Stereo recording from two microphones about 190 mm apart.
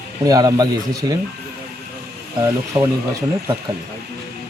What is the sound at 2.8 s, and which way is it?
Speech, 20° right (ahead or behind).